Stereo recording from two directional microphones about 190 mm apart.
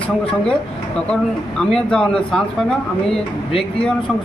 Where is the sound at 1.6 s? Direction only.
5° left (ahead or behind).